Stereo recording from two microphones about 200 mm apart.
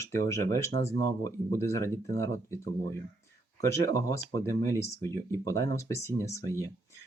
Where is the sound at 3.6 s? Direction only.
15° left (ahead or behind).